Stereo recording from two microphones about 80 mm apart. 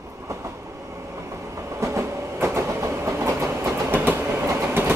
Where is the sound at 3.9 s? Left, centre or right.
Right.